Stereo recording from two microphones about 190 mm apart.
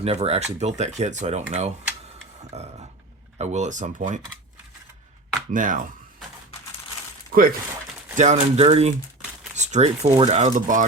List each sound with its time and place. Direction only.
0.0 s speech: 30° right (ahead or behind)
5.5 s speech: 45° right (ahead or behind)
8.1 s speech: 40° right (ahead or behind)